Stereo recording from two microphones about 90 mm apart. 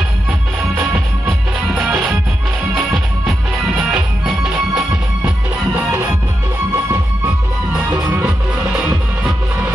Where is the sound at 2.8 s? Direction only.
15° right (ahead or behind).